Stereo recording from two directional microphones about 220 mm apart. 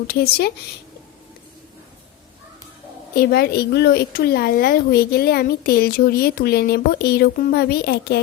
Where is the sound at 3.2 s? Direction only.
45° left (ahead or behind).